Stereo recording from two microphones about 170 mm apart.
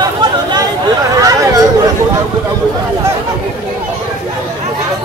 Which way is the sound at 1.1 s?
20° right (ahead or behind).